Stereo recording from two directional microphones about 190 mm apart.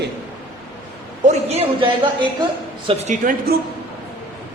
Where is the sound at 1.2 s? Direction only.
35° right (ahead or behind).